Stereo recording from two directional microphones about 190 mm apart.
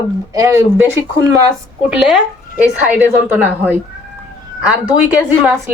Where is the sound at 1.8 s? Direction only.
5° right (ahead or behind).